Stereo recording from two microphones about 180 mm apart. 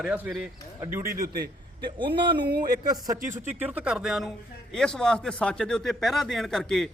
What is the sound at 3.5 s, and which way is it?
Speech, 10° right (ahead or behind).